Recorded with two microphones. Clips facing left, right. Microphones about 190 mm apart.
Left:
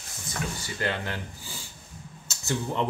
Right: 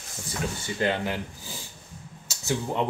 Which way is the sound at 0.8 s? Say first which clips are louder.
Right 5 dB; 15° right (ahead or behind).